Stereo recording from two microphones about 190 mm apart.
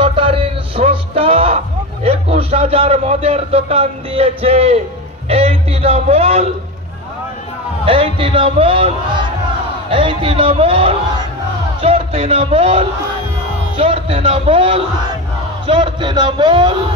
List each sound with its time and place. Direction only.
0.0 s music: 30° right (ahead or behind)
2.0 s a man's voice: 30° right (ahead or behind)
7.8 s a man's voice: 30° right (ahead or behind)